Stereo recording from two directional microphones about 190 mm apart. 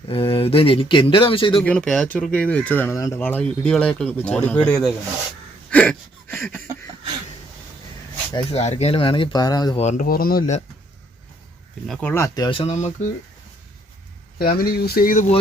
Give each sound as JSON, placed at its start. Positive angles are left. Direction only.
{"t": 0.1, "sound": "speech", "side_deg": 30}
{"t": 1.6, "sound": "speech", "side_deg": 5}
{"t": 5.7, "sound": "a sound", "side_deg": 5}
{"t": 8.5, "sound": "speech", "side_deg": 35}
{"t": 9.7, "sound": "speech", "side_deg": 35}
{"t": 10.1, "sound": "speech", "side_deg": 50}
{"t": 11.9, "sound": "speech", "side_deg": 5}
{"t": 14.3, "sound": "speech", "side_deg": 50}